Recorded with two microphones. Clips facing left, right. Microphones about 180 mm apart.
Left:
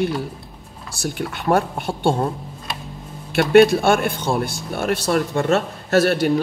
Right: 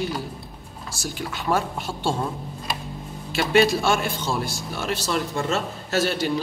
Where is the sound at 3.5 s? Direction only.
55° left (ahead or behind).